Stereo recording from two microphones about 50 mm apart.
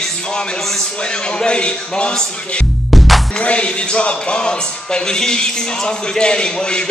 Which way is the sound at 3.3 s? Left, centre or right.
Left.